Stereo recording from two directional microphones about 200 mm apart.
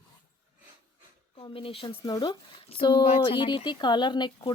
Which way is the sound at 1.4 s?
25° left (ahead or behind).